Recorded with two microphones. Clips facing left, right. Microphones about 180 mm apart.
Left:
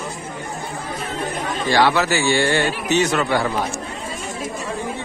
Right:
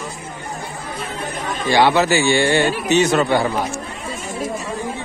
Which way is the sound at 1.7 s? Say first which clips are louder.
Right 3 dB; 20° right (ahead or behind).